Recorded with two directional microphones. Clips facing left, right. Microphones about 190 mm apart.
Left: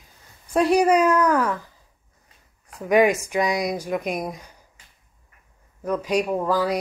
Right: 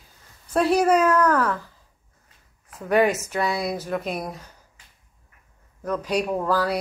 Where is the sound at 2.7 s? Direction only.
15° left (ahead or behind).